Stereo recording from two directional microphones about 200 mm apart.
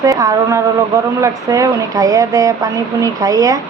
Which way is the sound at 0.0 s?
15° right (ahead or behind).